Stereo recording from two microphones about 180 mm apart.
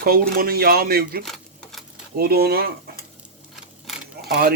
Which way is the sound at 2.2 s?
60° right (ahead or behind).